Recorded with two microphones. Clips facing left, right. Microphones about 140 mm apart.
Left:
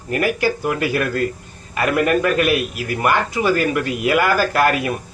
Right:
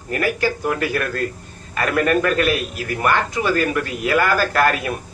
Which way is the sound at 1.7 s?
10° left (ahead or behind).